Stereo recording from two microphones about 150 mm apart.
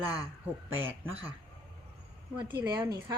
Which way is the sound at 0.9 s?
15° right (ahead or behind).